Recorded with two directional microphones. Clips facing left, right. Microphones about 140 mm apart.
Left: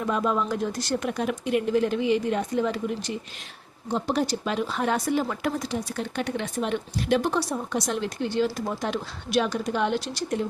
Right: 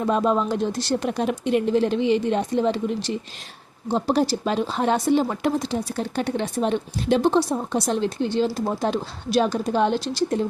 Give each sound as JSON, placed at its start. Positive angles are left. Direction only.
{"t": 0.0, "sound": "speech", "side_deg": -30}